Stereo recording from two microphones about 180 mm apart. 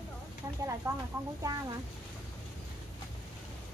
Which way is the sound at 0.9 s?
15° right (ahead or behind).